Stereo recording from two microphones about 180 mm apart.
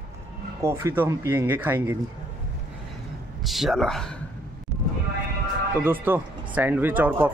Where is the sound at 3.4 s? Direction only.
Centre (ahead or behind).